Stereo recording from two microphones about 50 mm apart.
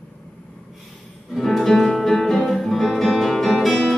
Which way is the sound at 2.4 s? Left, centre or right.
Centre.